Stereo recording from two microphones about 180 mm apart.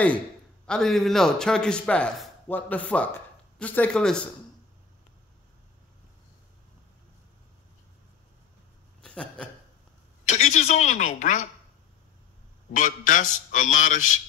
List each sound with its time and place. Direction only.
0.7 s speech: 5° left (ahead or behind)
9.0 s a man's voice: 5° left (ahead or behind)
10.2 s a woman's voice: 40° left (ahead or behind)
12.7 s a man's voice: 45° left (ahead or behind)